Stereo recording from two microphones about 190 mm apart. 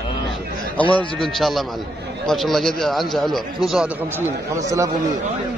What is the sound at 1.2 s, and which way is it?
A man's voice, centre (ahead or behind).